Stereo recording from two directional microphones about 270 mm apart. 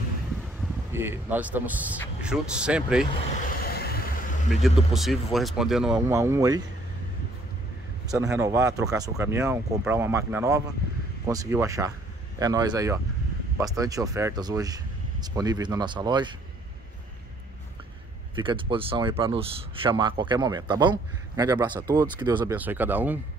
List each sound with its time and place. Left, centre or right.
0.9 s speech: centre
3.1 s speech: left
3.6 s vehicle: left
4.5 s speech: centre
8.1 s speech: centre
18.3 s speech: centre